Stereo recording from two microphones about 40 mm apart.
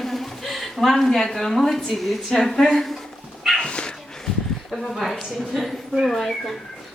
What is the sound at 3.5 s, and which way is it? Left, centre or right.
Dog, left.